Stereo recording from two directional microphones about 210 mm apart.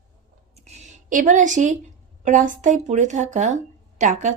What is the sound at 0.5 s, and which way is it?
Speech, 30° right (ahead or behind).